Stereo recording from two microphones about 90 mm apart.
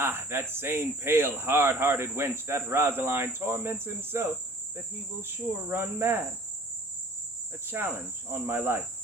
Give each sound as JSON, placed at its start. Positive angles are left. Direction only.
{"t": 0.0, "sound": "speech", "side_deg": -25}
{"t": 8.3, "sound": "speech", "side_deg": -25}